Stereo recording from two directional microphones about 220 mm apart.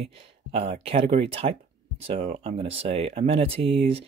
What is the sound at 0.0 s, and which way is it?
Speech, 25° right (ahead or behind).